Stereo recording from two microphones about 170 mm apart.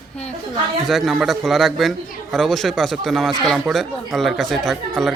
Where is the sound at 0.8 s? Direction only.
Centre (ahead or behind).